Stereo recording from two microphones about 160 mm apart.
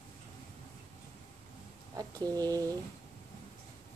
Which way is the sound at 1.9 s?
25° right (ahead or behind).